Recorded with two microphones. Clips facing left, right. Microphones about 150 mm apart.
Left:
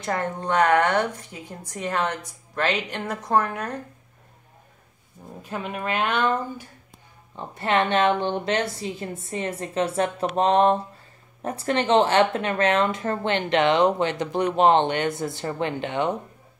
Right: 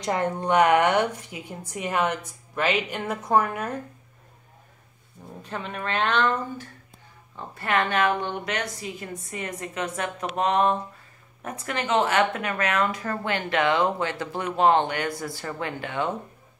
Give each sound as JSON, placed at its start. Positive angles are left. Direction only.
{"t": 0.0, "sound": "a woman's voice", "side_deg": -15}
{"t": 5.4, "sound": "a woman's voice", "side_deg": 5}
{"t": 7.3, "sound": "a woman's voice", "side_deg": 25}